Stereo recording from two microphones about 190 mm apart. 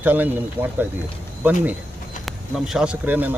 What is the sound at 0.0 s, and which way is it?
Speech, 10° right (ahead or behind).